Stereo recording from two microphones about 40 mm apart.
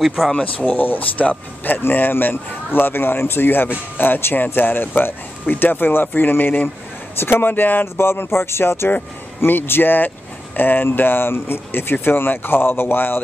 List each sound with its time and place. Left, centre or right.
0.7 s speech: left
1.8 s speech: left
7.2 s speech: left
8.0 s speech: left
9.4 s speech: left
10.9 s speech: left